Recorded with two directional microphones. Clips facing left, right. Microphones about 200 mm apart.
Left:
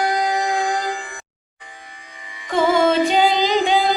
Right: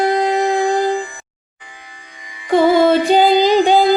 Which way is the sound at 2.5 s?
35° right (ahead or behind).